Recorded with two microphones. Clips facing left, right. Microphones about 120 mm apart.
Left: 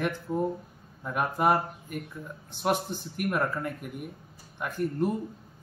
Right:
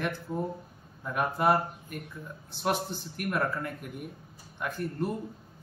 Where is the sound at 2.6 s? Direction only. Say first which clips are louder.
Left 2 dB; 15° left (ahead or behind).